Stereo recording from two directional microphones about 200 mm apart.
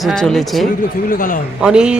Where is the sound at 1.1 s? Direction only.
45° left (ahead or behind).